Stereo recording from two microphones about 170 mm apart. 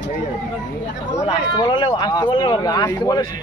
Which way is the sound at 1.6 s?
30° left (ahead or behind).